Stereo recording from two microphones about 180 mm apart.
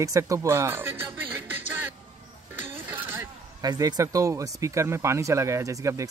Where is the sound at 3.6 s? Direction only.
20° right (ahead or behind).